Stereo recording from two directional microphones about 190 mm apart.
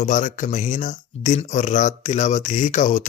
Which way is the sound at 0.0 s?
40° left (ahead or behind).